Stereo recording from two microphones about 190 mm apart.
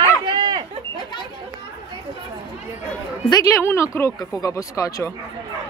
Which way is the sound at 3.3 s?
15° left (ahead or behind).